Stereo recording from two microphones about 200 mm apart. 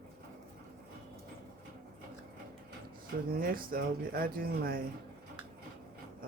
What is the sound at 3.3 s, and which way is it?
Speech, 45° right (ahead or behind).